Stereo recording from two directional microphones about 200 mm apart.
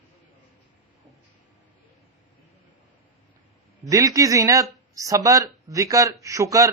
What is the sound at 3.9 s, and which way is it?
Speech, 15° right (ahead or behind).